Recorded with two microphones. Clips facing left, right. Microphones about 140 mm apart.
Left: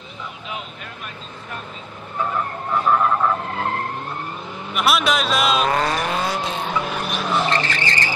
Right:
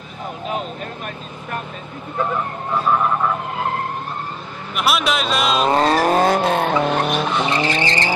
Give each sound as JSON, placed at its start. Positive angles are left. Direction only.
{"t": 0.5, "sound": "speech", "side_deg": -45}
{"t": 2.9, "sound": "speech", "side_deg": -5}
{"t": 4.7, "sound": "speech", "side_deg": 0}
{"t": 5.7, "sound": "speech", "side_deg": -25}
{"t": 6.0, "sound": "vehicle", "side_deg": -50}
{"t": 7.1, "sound": "vehicle", "side_deg": 0}
{"t": 7.5, "sound": "vehicle", "side_deg": -20}